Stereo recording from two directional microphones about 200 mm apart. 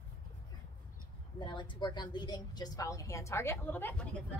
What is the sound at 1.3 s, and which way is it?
A woman's voice, 25° left (ahead or behind).